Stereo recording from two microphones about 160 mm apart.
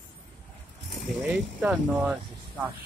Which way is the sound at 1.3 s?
10° right (ahead or behind).